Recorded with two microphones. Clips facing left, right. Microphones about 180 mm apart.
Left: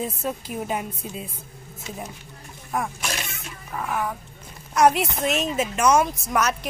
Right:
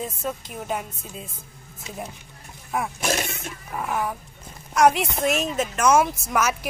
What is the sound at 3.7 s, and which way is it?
Speech, 10° right (ahead or behind).